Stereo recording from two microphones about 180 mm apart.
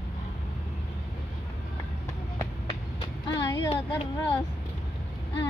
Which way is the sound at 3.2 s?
20° left (ahead or behind).